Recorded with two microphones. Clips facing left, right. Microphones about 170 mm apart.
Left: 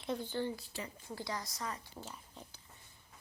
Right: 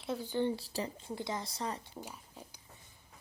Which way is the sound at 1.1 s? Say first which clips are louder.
Right 1 dB; 20° right (ahead or behind).